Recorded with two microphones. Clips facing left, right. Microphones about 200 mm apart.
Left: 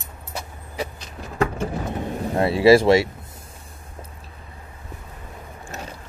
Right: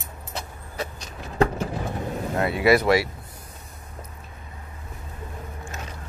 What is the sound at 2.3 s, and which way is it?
Speech, 30° left (ahead or behind).